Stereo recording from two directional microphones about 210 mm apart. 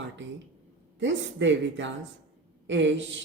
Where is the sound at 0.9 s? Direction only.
60° right (ahead or behind).